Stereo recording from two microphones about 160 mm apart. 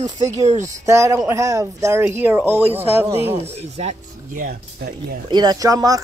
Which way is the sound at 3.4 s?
45° right (ahead or behind).